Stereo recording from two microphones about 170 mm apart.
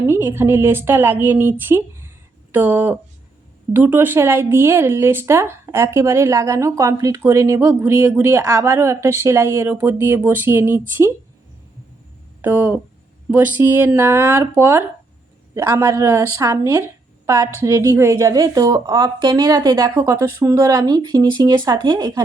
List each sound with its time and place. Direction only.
0.0 s speech: 15° right (ahead or behind)
12.4 s a woman's voice: 10° right (ahead or behind)